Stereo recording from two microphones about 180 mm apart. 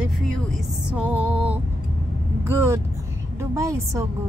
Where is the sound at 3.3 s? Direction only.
15° right (ahead or behind).